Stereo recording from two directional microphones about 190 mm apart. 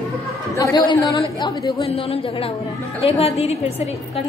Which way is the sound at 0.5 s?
20° left (ahead or behind).